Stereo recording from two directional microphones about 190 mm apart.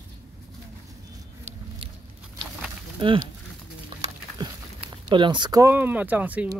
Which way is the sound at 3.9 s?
25° right (ahead or behind).